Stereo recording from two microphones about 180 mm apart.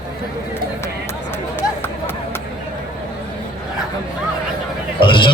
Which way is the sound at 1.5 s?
10° left (ahead or behind).